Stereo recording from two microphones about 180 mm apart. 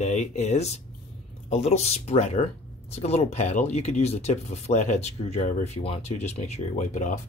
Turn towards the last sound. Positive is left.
turn(degrees=45)  # may be behind; listen again after turning